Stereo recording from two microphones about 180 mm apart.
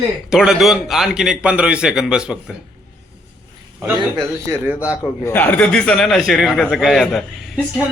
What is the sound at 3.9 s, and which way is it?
Speech, 20° right (ahead or behind).